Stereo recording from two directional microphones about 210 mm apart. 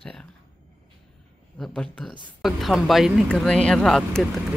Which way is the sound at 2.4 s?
Centre (ahead or behind).